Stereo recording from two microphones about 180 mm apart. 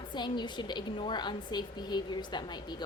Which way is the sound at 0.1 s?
25° left (ahead or behind).